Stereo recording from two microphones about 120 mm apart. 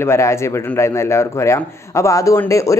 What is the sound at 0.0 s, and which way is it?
A man's voice, 20° left (ahead or behind).